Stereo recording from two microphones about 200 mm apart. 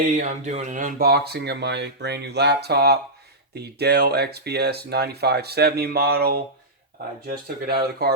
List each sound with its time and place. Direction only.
0.0 s speech: 40° right (ahead or behind)